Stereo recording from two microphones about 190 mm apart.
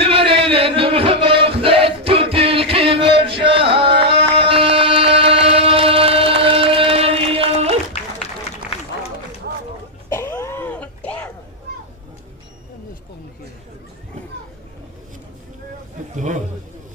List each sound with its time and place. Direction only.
0.0 s music: 30° right (ahead or behind)
8.2 s run: 30° left (ahead or behind)
10.0 s cough: 15° left (ahead or behind)
16.2 s a sound: 40° right (ahead or behind)